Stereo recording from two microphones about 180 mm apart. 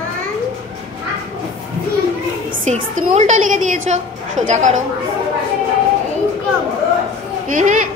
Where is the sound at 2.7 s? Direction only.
40° right (ahead or behind).